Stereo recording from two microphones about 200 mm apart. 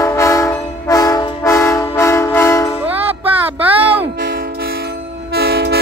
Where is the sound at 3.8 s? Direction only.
30° right (ahead or behind).